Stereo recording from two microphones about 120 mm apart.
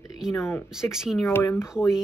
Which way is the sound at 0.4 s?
25° left (ahead or behind).